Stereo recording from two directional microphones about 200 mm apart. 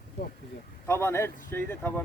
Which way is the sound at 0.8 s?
15° left (ahead or behind).